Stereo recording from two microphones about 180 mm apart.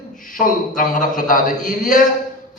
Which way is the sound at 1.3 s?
50° left (ahead or behind).